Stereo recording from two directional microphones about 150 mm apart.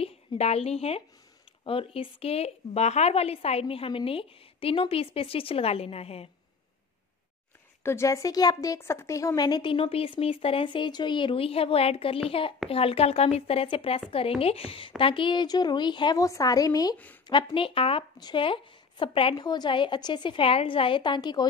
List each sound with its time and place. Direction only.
0.0 s a woman's voice: 40° left (ahead or behind)
7.8 s a woman's voice: 20° left (ahead or behind)